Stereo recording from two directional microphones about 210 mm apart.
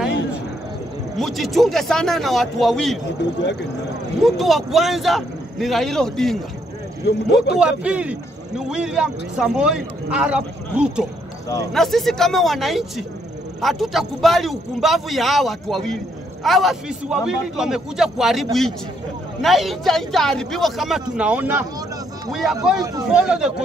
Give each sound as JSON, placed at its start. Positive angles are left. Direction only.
{"t": 1.1, "sound": "speech", "side_deg": 0}
{"t": 4.2, "sound": "speech", "side_deg": 0}
{"t": 7.1, "sound": "speech", "side_deg": 55}
{"t": 7.5, "sound": "speech", "side_deg": -5}